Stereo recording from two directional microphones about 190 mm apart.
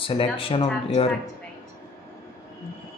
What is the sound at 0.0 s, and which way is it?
Speech, 30° left (ahead or behind).